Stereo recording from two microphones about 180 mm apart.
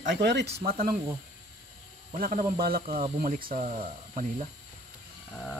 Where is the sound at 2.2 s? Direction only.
55° right (ahead or behind).